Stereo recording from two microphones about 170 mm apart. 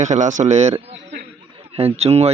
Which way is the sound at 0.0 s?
45° right (ahead or behind).